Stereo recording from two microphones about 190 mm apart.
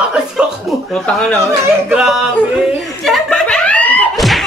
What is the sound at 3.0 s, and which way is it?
Laughter, centre (ahead or behind).